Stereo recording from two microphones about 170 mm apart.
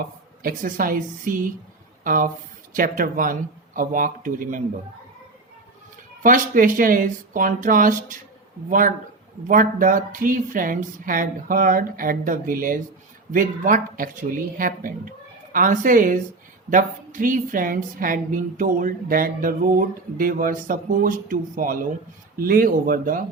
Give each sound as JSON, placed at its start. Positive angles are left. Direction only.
{"t": 0.4, "sound": "a woman's voice", "side_deg": -55}
{"t": 6.2, "sound": "a woman's voice", "side_deg": -50}
{"t": 9.5, "sound": "a woman's voice", "side_deg": -55}